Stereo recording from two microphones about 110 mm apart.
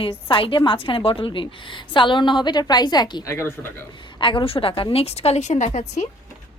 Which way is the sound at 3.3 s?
25° left (ahead or behind).